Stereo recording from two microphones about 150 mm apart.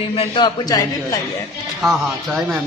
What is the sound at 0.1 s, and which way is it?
Speech, 35° left (ahead or behind).